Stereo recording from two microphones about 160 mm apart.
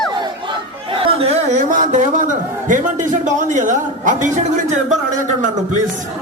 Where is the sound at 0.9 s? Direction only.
35° right (ahead or behind).